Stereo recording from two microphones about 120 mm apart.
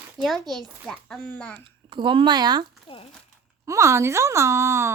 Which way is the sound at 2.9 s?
50° left (ahead or behind).